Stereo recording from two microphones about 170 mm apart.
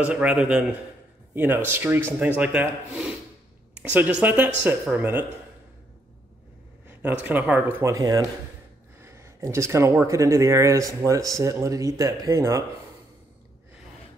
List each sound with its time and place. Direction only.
0.0 s speech: 5° right (ahead or behind)
6.9 s a sound: 10° right (ahead or behind)
7.2 s speech: 10° right (ahead or behind)